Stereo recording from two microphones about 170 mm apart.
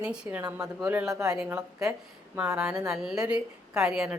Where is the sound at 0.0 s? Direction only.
5° right (ahead or behind).